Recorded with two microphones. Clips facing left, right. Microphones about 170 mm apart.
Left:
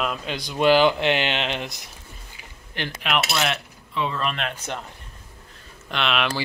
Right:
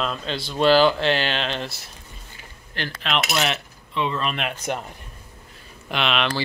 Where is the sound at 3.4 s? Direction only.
Centre (ahead or behind).